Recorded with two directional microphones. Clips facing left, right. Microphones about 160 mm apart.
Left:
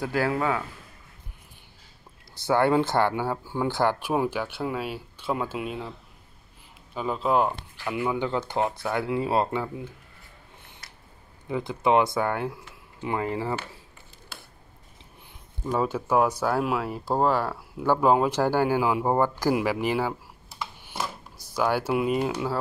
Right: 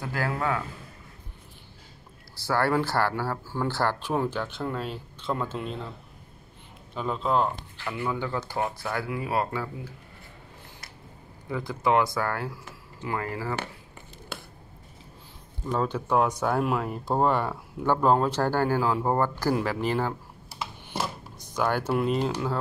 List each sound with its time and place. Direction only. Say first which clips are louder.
0.0 s speech: left 4 dB; 15° left (ahead or behind)
2.3 s speech: left 3 dB; 20° left (ahead or behind)
6.9 s speech: left 2 dB; 5° left (ahead or behind); by 9.7 s 25° left (ahead or behind)
11.4 s speech: left 2 dB; 20° left (ahead or behind)
15.6 s speech: left 2 dB; 10° left (ahead or behind)
21.5 s speech: left 1 dB; 10° left (ahead or behind)